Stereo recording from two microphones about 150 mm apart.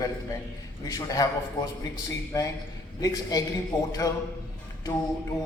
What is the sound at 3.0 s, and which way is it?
A man's voice, 25° left (ahead or behind).